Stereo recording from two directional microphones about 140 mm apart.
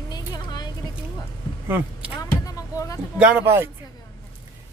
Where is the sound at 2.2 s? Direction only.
25° left (ahead or behind).